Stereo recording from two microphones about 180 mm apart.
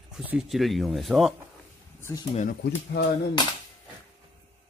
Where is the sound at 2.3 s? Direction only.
45° left (ahead or behind).